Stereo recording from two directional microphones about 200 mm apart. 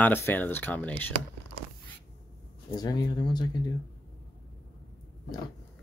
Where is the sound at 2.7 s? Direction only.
20° left (ahead or behind).